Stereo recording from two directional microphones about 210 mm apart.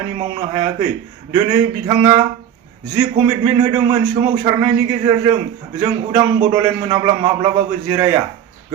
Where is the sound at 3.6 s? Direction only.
25° right (ahead or behind).